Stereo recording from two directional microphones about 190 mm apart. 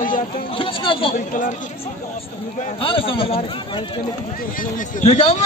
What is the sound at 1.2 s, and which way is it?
A man's voice, 40° left (ahead or behind).